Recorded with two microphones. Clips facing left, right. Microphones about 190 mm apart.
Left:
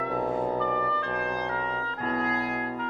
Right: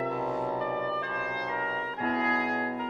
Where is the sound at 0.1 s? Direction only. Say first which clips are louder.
Left 3 dB; 50° left (ahead or behind).